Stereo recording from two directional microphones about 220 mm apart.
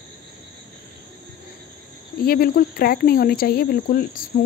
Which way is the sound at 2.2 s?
45° left (ahead or behind).